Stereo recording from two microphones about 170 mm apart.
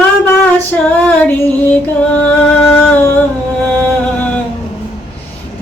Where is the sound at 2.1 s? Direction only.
10° left (ahead or behind).